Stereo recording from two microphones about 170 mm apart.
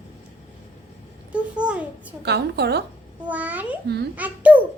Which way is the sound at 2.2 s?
75° right (ahead or behind).